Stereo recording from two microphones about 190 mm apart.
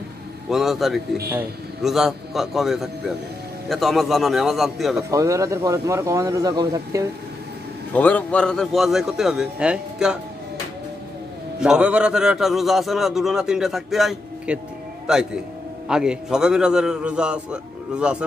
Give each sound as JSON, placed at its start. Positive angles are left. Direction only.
{"t": 0.5, "sound": "a man's voice", "side_deg": 0}
{"t": 5.1, "sound": "speech", "side_deg": -15}
{"t": 7.9, "sound": "a man's voice", "side_deg": 10}
{"t": 11.6, "sound": "a man's voice", "side_deg": -5}